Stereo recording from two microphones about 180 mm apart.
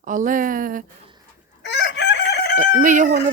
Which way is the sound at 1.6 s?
75° left (ahead or behind).